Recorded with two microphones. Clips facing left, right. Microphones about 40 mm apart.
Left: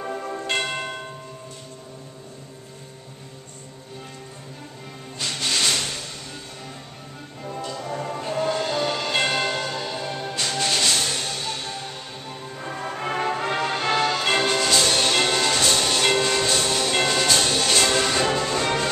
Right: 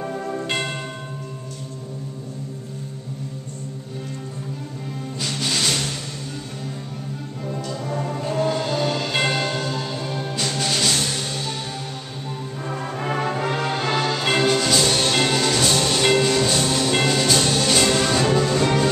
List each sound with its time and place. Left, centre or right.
0.0 s church bell: centre
0.6 s church bell: centre
5.2 s music: centre
7.4 s music: centre